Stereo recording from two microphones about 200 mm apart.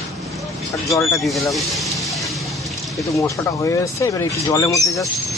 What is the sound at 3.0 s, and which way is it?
Speech, 15° left (ahead or behind).